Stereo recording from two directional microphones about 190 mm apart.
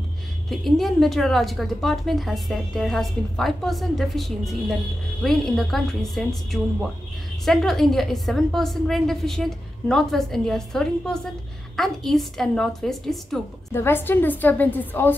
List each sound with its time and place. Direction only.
0.5 s a woman's voice: centre (ahead or behind)